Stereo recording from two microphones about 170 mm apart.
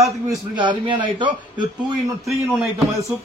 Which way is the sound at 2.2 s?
Centre (ahead or behind).